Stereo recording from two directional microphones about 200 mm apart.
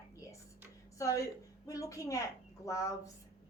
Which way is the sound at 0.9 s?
15° left (ahead or behind).